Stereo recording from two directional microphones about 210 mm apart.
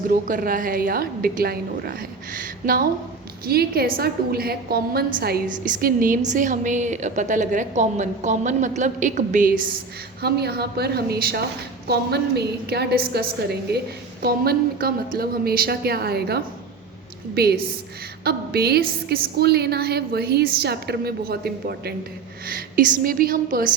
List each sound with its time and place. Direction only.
0.1 s a woman's voice: 40° right (ahead or behind)
3.4 s a woman's voice: 45° right (ahead or behind)
10.2 s a woman's voice: 50° right (ahead or behind)